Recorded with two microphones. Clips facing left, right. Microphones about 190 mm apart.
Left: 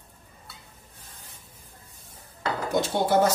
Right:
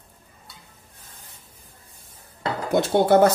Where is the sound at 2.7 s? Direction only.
60° right (ahead or behind).